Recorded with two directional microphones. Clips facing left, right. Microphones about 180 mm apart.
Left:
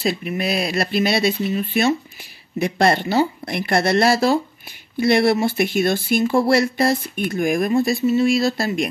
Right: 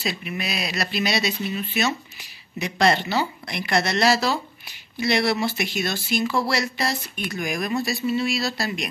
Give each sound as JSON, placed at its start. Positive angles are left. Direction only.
{"t": 0.0, "sound": "speech", "side_deg": 45}